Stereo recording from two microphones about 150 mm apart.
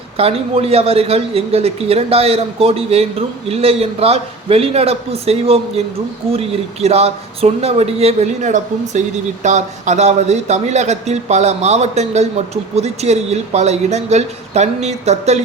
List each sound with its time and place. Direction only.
0.2 s a man's voice: 40° right (ahead or behind)